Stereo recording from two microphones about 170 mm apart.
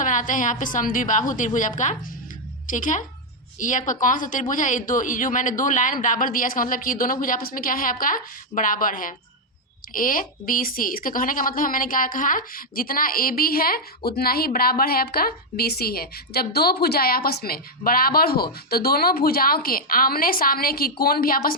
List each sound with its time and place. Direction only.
0.0 s speech: 50° left (ahead or behind)